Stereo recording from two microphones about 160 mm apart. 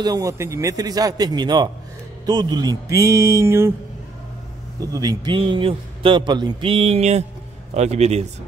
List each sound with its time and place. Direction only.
0.0 s a man's voice: 20° right (ahead or behind)
4.7 s a man's voice: 20° right (ahead or behind); by 8.3 s 40° right (ahead or behind)